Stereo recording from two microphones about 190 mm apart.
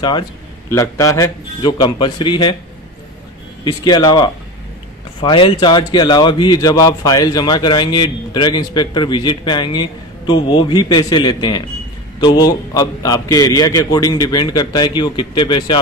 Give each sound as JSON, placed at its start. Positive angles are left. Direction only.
{"t": 0.0, "sound": "a man's voice", "side_deg": 20}
{"t": 3.6, "sound": "a man's voice", "side_deg": 25}